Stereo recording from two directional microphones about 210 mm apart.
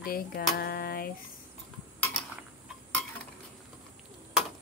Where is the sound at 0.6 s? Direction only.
45° left (ahead or behind).